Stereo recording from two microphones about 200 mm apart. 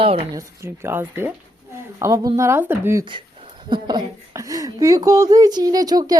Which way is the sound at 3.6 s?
20° right (ahead or behind).